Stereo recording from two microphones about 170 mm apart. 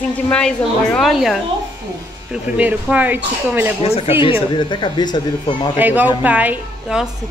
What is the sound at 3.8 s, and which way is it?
Speech, 35° left (ahead or behind).